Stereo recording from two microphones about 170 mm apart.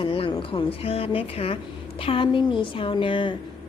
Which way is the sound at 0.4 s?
30° left (ahead or behind).